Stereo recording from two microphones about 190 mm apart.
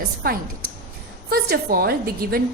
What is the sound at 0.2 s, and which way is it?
A woman's voice, 50° right (ahead or behind).